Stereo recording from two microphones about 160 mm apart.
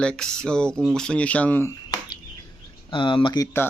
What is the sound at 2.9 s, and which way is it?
Speech, 30° left (ahead or behind).